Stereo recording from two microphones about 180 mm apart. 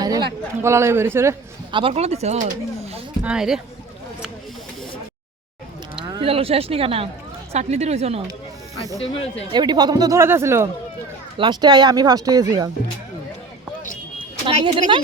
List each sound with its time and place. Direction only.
0.0 s speech: 20° right (ahead or behind)
1.7 s speech: 30° right (ahead or behind)
3.2 s speech: 5° right (ahead or behind)
6.1 s speech: 30° right (ahead or behind)
9.0 s speech: 35° left (ahead or behind)
9.5 s speech: 25° right (ahead or behind)
11.3 s speech: 25° right (ahead or behind)
14.4 s speech: 25° right (ahead or behind)